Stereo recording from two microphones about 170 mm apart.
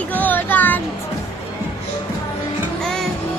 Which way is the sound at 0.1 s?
10° left (ahead or behind).